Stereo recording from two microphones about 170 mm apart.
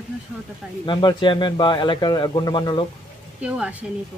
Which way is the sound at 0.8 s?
30° left (ahead or behind).